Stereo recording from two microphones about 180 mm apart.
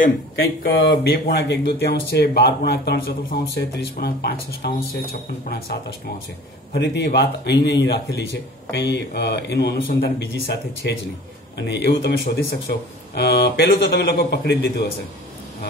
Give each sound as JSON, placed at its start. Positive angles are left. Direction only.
{"t": 0.7, "sound": "speech", "side_deg": 65}